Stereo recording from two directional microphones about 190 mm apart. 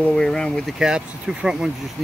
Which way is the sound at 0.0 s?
5° left (ahead or behind).